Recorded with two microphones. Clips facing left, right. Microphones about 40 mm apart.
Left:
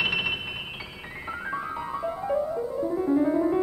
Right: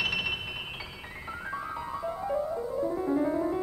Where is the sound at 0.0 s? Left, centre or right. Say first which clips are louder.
Left 4 dB; centre.